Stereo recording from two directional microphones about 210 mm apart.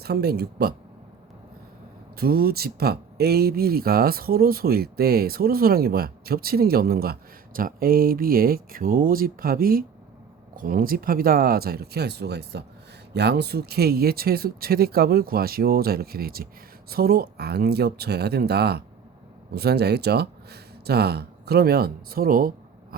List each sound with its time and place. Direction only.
0.0 s speech: 50° right (ahead or behind)
2.1 s speech: 45° right (ahead or behind)